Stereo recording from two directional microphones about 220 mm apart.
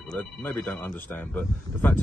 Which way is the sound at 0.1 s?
10° left (ahead or behind).